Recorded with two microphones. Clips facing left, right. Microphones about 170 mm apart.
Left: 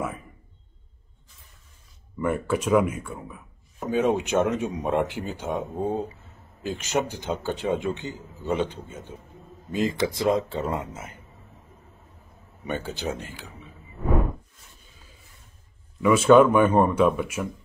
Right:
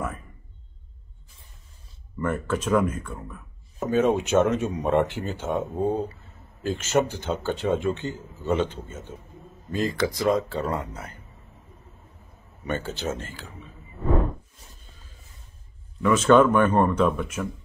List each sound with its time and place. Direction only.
2.1 s speech: 10° left (ahead or behind)
12.6 s speech: 15° left (ahead or behind)
16.0 s speech: 10° left (ahead or behind)